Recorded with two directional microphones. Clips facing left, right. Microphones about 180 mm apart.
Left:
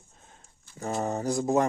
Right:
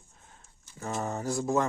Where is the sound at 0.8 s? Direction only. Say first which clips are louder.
Left 4 dB; 40° left (ahead or behind).